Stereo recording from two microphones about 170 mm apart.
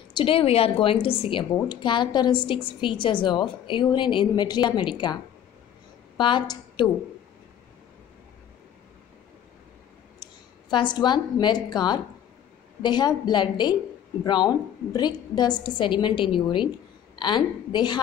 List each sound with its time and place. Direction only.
0.1 s a woman's voice: 30° left (ahead or behind)
10.2 s a woman's voice: 25° left (ahead or behind)